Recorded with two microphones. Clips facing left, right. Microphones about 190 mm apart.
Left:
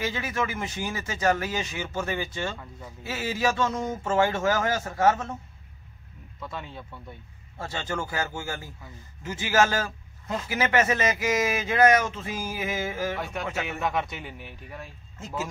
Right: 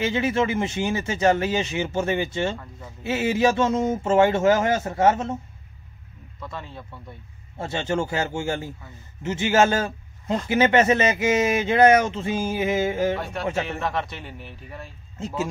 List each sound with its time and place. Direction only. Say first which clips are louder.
0.0 s a man's voice: right 7 dB; 25° right (ahead or behind)
6.4 s speech: right 1 dB; centre (ahead or behind)
7.5 s a man's voice: right 7 dB; 25° right (ahead or behind)
13.7 s speech: right 1 dB; 5° left (ahead or behind)
15.1 s speech: right 5 dB; 30° right (ahead or behind)